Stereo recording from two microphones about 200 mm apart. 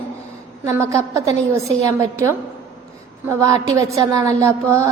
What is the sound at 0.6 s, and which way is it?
Speech, 15° right (ahead or behind).